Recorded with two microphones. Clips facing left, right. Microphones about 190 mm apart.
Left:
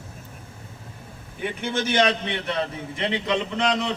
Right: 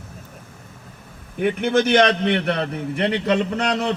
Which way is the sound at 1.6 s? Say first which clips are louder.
Right 6 dB; 60° right (ahead or behind).